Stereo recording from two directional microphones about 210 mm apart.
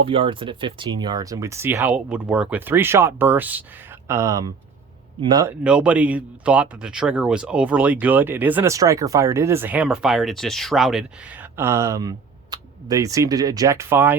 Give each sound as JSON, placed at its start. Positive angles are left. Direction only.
{"t": 0.0, "sound": "speech", "side_deg": -25}
{"t": 5.6, "sound": "speech", "side_deg": -5}